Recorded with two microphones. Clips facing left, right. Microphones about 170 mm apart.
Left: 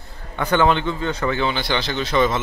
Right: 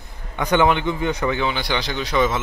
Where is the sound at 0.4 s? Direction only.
15° right (ahead or behind).